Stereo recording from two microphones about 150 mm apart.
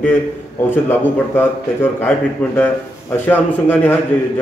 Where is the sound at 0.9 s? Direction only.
15° left (ahead or behind).